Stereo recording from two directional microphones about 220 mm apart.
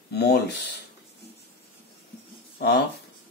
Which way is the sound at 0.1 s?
45° left (ahead or behind).